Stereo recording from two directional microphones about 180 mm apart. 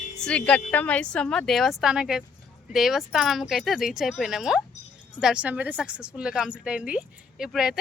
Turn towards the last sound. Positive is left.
turn(degrees=-5)  # may be behind; listen again after turning